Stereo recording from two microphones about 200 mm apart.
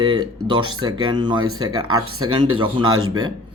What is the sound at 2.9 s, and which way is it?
Speech, 90° right.